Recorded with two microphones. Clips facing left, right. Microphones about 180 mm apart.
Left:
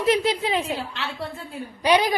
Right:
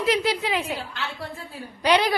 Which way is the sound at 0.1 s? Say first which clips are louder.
Left 3 dB; 25° left (ahead or behind).